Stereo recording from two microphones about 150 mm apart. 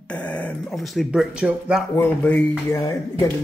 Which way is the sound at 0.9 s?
Centre (ahead or behind).